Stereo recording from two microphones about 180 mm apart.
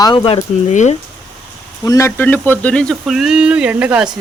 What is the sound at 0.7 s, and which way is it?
Speech, 40° left (ahead or behind).